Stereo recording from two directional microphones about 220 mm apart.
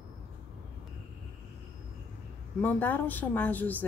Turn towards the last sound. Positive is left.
turn(degrees=5)  # may be behind; listen again after turning